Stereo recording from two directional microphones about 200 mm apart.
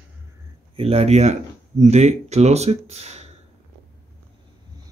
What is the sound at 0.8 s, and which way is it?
Speech, 30° right (ahead or behind).